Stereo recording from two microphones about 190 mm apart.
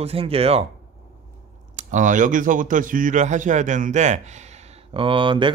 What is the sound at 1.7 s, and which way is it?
Speech, 40° right (ahead or behind).